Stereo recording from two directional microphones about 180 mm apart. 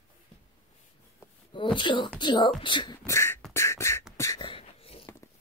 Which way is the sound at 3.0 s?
15° left (ahead or behind).